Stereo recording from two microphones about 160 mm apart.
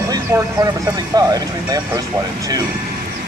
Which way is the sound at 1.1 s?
25° right (ahead or behind).